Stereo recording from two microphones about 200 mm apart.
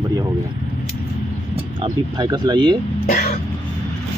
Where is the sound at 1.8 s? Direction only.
20° right (ahead or behind).